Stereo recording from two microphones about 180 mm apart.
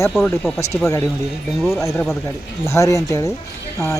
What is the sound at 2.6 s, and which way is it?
Speech, 15° left (ahead or behind).